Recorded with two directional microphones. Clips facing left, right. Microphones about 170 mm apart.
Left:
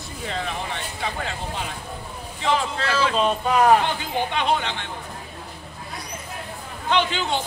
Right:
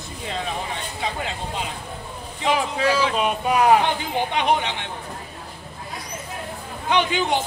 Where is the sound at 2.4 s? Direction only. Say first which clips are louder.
Right 2 dB; 10° right (ahead or behind).